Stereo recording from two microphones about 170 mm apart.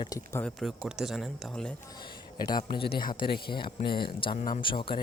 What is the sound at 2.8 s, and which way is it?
Speech, 60° left (ahead or behind).